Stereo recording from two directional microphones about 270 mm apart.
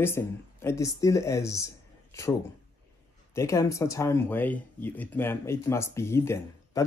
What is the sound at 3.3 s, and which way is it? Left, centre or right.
Speech, centre.